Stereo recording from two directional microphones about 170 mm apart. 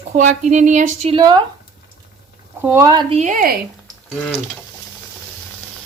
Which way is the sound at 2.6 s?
20° right (ahead or behind).